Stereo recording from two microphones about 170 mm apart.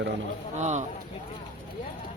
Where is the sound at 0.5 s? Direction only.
45° right (ahead or behind).